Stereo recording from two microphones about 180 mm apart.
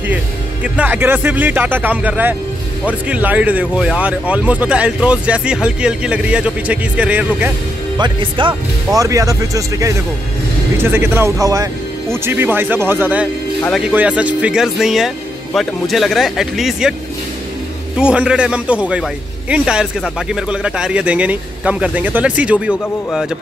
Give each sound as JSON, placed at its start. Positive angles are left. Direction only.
{"t": 0.7, "sound": "speech", "side_deg": -10}
{"t": 8.0, "sound": "speech", "side_deg": -25}
{"t": 17.9, "sound": "speech", "side_deg": -5}